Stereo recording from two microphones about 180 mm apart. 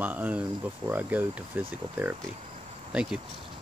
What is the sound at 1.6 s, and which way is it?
Speech, 30° right (ahead or behind).